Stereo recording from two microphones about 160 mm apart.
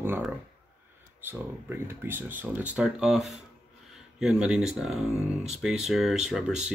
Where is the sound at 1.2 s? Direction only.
15° right (ahead or behind).